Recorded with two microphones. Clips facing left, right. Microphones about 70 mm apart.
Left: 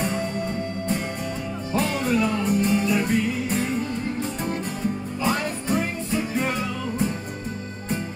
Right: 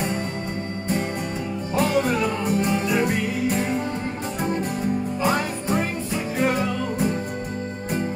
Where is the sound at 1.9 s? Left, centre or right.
Centre.